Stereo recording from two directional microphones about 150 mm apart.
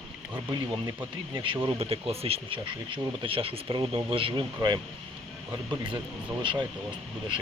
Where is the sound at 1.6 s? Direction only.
40° right (ahead or behind).